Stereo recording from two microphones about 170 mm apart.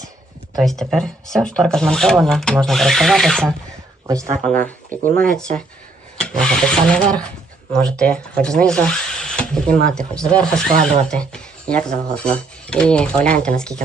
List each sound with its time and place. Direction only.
0.5 s speech: centre (ahead or behind)
4.0 s speech: 20° right (ahead or behind)
4.4 s speech: 5° left (ahead or behind)
5.0 s speech: 55° right (ahead or behind)
6.1 s speech: 5° left (ahead or behind)